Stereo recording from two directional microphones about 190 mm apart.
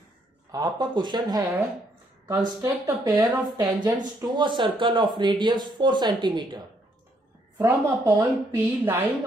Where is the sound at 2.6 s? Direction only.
20° right (ahead or behind).